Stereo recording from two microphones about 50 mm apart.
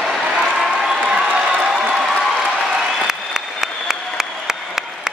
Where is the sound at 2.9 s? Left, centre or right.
Centre.